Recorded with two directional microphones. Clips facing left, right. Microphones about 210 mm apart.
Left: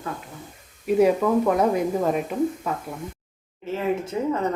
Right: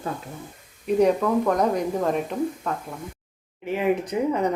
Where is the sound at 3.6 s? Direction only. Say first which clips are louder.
Right 2 dB; 15° right (ahead or behind).